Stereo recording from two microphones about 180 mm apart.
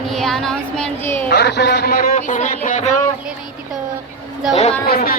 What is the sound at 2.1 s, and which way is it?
Speech, 40° left (ahead or behind).